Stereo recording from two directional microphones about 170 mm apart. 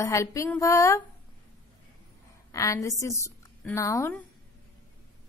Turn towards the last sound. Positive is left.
turn(degrees=15)  # may be behind; listen again after turning